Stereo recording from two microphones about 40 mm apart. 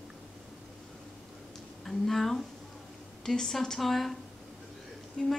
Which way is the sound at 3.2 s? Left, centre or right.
Centre.